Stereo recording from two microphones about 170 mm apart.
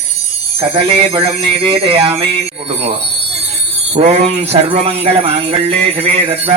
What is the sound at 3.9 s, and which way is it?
Jingle bell, 40° right (ahead or behind).